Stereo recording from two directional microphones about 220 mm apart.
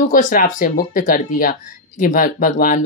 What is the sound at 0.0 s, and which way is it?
Speech, 35° left (ahead or behind).